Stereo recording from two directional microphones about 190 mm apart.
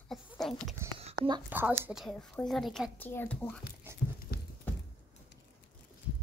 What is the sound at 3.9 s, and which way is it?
Dog, 10° right (ahead or behind).